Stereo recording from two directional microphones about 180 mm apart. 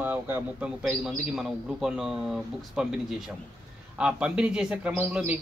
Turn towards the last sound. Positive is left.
turn(degrees=-10)  # may be behind; listen again after turning